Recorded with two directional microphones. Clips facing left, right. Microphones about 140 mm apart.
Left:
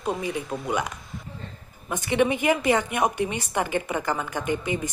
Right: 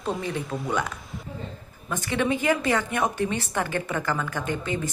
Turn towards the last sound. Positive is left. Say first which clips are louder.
# left 2 dB
turn(degrees=15)  # may be behind; listen again after turning